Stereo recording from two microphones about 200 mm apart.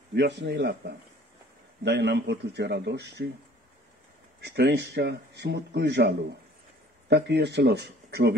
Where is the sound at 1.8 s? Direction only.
60° right (ahead or behind).